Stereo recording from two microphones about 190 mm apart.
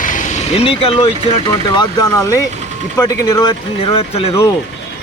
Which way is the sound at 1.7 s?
20° left (ahead or behind).